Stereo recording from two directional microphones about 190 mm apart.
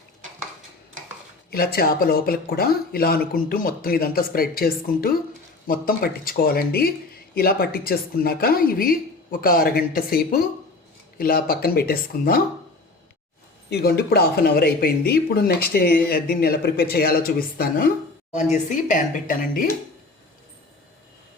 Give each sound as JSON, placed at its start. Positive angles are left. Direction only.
{"t": 1.5, "sound": "speech", "side_deg": 55}
{"t": 13.7, "sound": "speech", "side_deg": 60}